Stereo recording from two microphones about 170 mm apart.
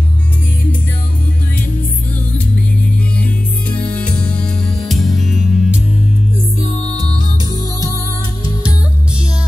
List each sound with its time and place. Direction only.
2.3 s music: 5° left (ahead or behind)
7.2 s music: 25° right (ahead or behind)